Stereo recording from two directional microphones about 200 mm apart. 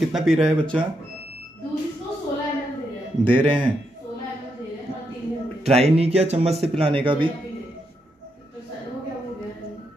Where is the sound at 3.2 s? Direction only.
25° right (ahead or behind).